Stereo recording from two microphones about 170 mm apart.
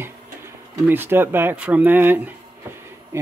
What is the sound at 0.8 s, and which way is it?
Speech, 10° right (ahead or behind).